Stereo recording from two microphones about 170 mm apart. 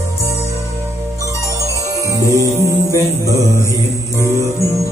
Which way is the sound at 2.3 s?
20° right (ahead or behind).